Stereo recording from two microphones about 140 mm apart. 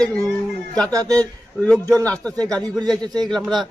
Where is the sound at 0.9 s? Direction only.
25° right (ahead or behind).